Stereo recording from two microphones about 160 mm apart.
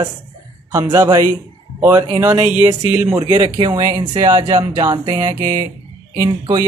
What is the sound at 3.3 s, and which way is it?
Speech, 25° right (ahead or behind).